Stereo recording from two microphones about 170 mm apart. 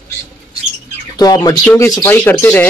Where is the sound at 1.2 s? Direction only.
20° left (ahead or behind).